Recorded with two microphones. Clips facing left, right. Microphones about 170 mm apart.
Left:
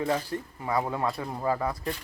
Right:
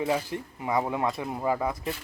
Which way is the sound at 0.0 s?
10° right (ahead or behind).